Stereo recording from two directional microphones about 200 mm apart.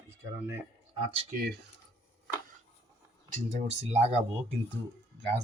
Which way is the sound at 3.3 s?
35° right (ahead or behind).